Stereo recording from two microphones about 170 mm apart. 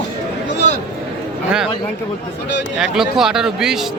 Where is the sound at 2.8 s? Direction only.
5° right (ahead or behind).